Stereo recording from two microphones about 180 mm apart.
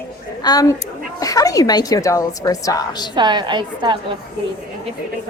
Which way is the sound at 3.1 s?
25° right (ahead or behind).